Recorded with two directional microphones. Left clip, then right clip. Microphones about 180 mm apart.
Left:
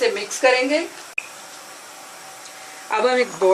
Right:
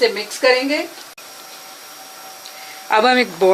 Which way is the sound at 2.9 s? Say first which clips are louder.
Right 5 dB; 55° right (ahead or behind).